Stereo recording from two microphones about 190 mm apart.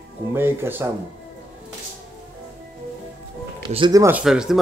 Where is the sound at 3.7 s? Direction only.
20° right (ahead or behind).